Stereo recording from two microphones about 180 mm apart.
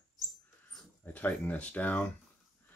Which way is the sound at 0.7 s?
10° left (ahead or behind).